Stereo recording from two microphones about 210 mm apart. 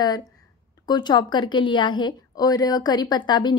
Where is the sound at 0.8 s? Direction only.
20° left (ahead or behind).